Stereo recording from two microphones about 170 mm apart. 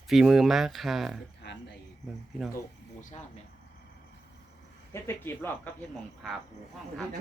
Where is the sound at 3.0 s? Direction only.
50° left (ahead or behind).